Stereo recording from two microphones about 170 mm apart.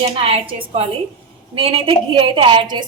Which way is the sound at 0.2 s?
35° right (ahead or behind).